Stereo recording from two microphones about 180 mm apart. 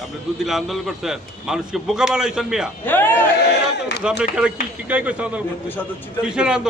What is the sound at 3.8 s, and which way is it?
Speech, 70° left (ahead or behind).